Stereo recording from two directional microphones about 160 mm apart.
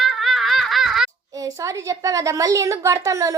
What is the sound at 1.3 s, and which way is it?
A woman's voice, 20° right (ahead or behind).